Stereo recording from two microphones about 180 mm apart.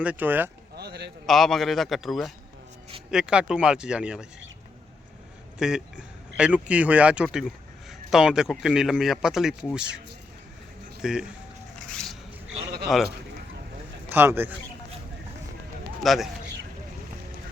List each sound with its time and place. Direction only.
0.0 s speech: 10° right (ahead or behind)
0.8 s a sound: 65° right (ahead or behind)
1.3 s speech: centre (ahead or behind)
5.5 s speech: 5° right (ahead or behind)
11.0 s speech: 5° right (ahead or behind)
11.9 s cat: 5° left (ahead or behind)
12.9 s speech: centre (ahead or behind)
14.1 s speech: 10° right (ahead or behind)
16.0 s speech: centre (ahead or behind)